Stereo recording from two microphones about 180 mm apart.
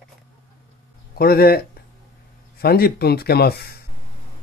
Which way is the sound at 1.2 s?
60° left (ahead or behind).